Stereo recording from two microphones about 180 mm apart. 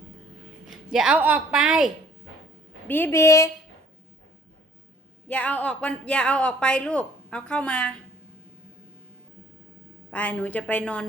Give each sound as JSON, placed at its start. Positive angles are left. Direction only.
{"t": 0.7, "sound": "speech", "side_deg": -5}
{"t": 2.8, "sound": "a woman's voice", "side_deg": 10}
{"t": 5.3, "sound": "speech", "side_deg": 10}
{"t": 10.1, "sound": "a woman's voice", "side_deg": 5}